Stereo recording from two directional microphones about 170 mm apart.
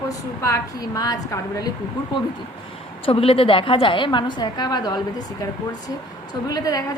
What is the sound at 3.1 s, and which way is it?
A woman's voice, 35° left (ahead or behind).